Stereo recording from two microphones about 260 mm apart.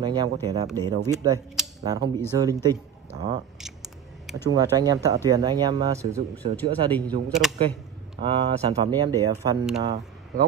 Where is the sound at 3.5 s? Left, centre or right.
Centre.